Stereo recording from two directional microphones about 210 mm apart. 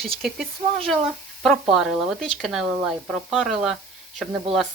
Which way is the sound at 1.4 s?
Centre (ahead or behind).